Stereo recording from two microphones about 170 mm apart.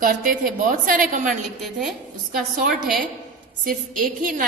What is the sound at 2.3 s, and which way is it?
A woman's voice, 55° right (ahead or behind).